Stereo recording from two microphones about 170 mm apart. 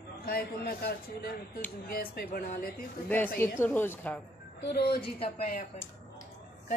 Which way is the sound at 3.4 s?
15° left (ahead or behind).